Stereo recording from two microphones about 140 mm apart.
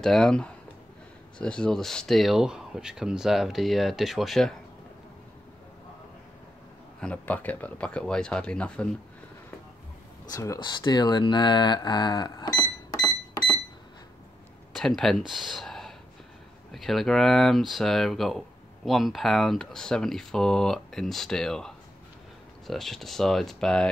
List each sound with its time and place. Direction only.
0.0 s speech: 5° left (ahead or behind)
7.0 s speech: 10° left (ahead or behind)
10.3 s speech: 25° left (ahead or behind)
14.7 s speech: centre (ahead or behind)